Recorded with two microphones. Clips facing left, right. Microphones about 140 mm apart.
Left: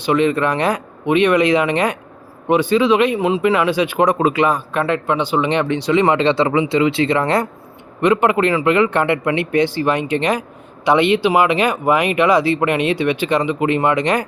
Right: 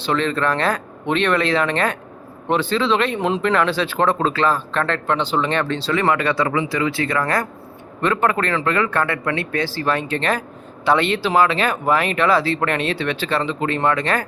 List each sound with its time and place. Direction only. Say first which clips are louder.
0.0 s speech: left 4 dB; 15° left (ahead or behind)